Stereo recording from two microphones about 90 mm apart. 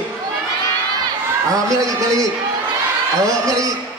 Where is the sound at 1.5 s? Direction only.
40° right (ahead or behind).